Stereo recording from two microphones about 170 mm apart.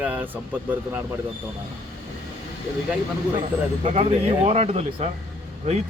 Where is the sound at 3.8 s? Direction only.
40° right (ahead or behind).